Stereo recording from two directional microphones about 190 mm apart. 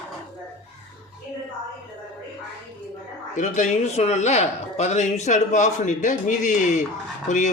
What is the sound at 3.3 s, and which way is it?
Speech, 40° left (ahead or behind).